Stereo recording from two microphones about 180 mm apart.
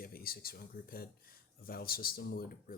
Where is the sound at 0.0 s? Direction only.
55° left (ahead or behind).